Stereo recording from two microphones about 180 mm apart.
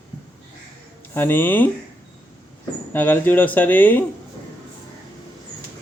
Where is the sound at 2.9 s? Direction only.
10° left (ahead or behind).